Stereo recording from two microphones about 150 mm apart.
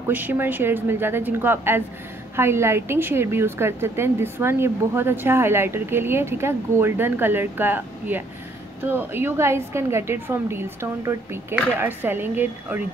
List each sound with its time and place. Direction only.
0.1 s a woman's voice: 10° right (ahead or behind)